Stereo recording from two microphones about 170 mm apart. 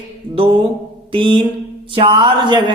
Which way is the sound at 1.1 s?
30° right (ahead or behind).